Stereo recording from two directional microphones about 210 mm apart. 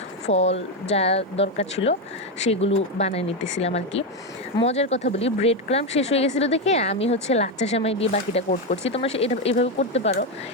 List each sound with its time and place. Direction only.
0.3 s speech: 30° left (ahead or behind)